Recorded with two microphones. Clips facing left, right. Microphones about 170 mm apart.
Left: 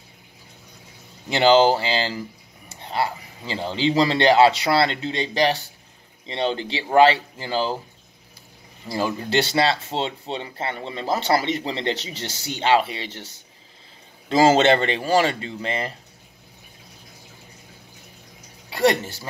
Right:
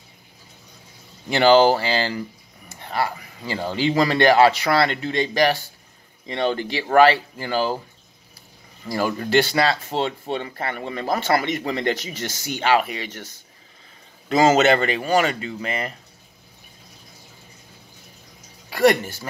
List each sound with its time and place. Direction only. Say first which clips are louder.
1.3 s speech: right 1 dB; 20° left (ahead or behind)
8.9 s speech: right 3 dB; 20° left (ahead or behind)
14.3 s speech: even; 30° left (ahead or behind)